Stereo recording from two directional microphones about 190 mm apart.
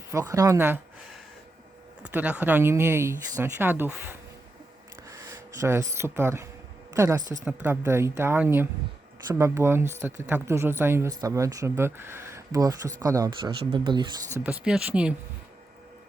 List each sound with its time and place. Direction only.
0.1 s speech: 15° right (ahead or behind)
2.1 s speech: 5° right (ahead or behind)
5.5 s speech: 15° right (ahead or behind)
14.4 s speech: 5° right (ahead or behind)